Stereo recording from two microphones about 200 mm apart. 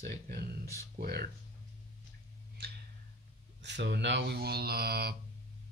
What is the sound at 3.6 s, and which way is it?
Speech, 60° right (ahead or behind).